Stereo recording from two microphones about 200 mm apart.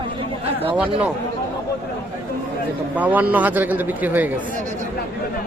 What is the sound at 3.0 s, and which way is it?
A man's voice, 10° right (ahead or behind).